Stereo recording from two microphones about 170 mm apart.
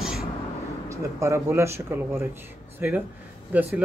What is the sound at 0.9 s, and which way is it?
Speech, 15° right (ahead or behind).